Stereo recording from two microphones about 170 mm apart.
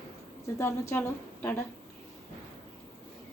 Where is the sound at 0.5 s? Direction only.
15° left (ahead or behind).